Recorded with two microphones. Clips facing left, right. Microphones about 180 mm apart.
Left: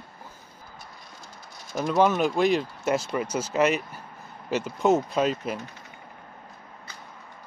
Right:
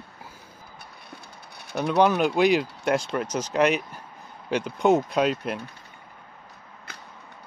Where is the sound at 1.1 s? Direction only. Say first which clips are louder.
Right 1 dB; 60° right (ahead or behind).